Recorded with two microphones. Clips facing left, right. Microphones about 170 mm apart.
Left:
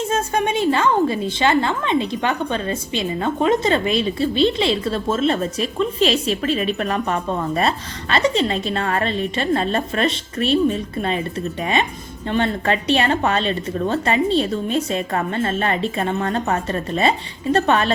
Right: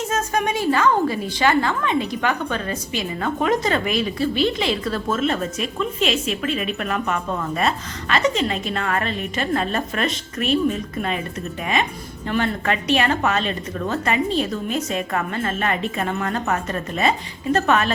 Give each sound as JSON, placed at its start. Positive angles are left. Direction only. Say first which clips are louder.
{"t": 0.0, "sound": "a woman's voice", "louder": "left 2 dB", "side_deg": 30}